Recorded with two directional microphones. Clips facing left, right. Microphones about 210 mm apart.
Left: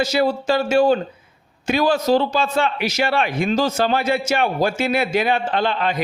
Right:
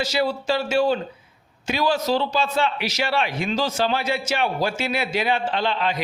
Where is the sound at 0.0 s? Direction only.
50° left (ahead or behind).